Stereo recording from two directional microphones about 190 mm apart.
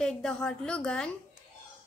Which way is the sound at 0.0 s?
5° left (ahead or behind).